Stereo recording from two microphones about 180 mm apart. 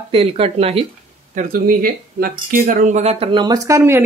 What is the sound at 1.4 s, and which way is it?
Speech, 50° right (ahead or behind).